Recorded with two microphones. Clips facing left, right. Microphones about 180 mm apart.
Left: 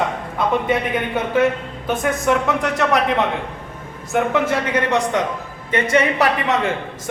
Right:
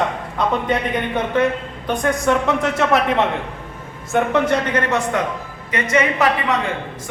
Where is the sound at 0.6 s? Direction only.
5° left (ahead or behind).